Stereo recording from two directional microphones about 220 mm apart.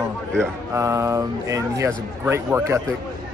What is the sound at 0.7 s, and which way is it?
A man's voice, 15° right (ahead or behind).